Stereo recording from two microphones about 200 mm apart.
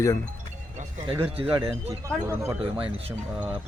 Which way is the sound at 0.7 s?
25° right (ahead or behind).